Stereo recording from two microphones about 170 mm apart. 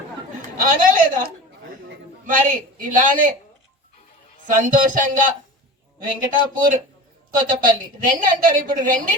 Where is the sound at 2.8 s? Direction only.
50° right (ahead or behind).